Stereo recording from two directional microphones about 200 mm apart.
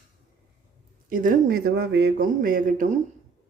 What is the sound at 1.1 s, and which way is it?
A man's voice, 45° right (ahead or behind).